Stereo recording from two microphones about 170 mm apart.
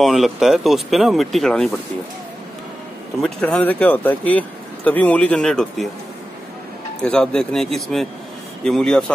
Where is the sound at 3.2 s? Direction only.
5° left (ahead or behind).